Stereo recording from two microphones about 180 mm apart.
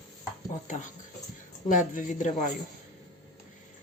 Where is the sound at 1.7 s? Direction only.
45° left (ahead or behind).